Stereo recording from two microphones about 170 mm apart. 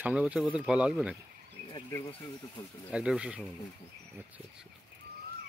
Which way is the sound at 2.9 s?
5° right (ahead or behind).